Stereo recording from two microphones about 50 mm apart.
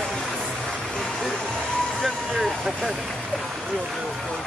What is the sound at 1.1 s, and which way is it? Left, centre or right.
Music, centre.